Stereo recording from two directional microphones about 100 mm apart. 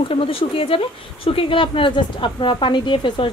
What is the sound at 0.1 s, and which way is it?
Speech, 70° left (ahead or behind).